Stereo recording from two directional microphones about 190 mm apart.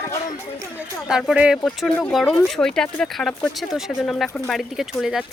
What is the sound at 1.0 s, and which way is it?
Speech, 5° right (ahead or behind).